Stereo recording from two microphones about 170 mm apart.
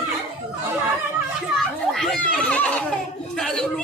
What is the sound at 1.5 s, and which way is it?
Children playing, centre (ahead or behind).